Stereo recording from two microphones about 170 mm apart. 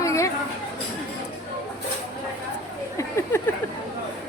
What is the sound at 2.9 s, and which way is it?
Speech, 15° left (ahead or behind).